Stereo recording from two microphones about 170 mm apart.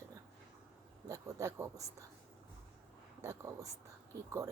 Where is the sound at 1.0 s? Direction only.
20° right (ahead or behind).